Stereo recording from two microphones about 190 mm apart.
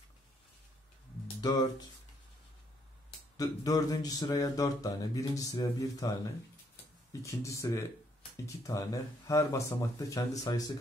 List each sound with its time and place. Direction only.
1.4 s speech: 20° left (ahead or behind)
3.3 s speech: 20° left (ahead or behind)